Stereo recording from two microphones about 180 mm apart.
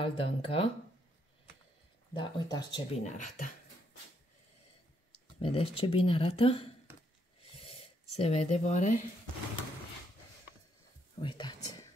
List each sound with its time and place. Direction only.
0.0 s speech: 30° left (ahead or behind)
2.1 s speech: 25° left (ahead or behind)
3.0 s speech: 45° left (ahead or behind)
5.4 s speech: 30° left (ahead or behind)
7.5 s a sound: 35° left (ahead or behind)
11.1 s whispering: 25° left (ahead or behind)